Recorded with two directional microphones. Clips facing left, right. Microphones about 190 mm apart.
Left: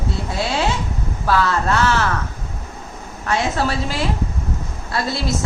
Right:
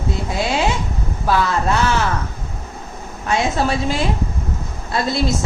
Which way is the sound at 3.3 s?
20° right (ahead or behind).